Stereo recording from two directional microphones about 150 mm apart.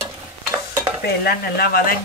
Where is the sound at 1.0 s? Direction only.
90° left.